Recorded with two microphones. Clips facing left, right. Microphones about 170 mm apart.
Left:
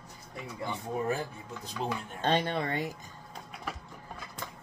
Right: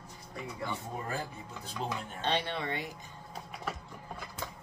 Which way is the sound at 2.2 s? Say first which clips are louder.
Left 4 dB; 45° left (ahead or behind).